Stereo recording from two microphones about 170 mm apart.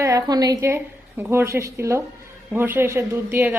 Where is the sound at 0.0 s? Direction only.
20° right (ahead or behind).